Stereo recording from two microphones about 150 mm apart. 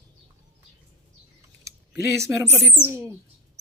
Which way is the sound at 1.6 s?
20° right (ahead or behind).